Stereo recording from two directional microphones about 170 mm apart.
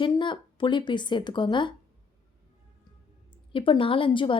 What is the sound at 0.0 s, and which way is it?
Speech, 30° left (ahead or behind).